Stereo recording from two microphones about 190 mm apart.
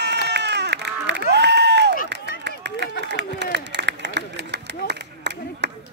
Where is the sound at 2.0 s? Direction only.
65° right (ahead or behind).